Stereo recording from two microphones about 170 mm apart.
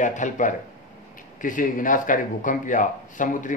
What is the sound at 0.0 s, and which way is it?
Speech, 45° left (ahead or behind).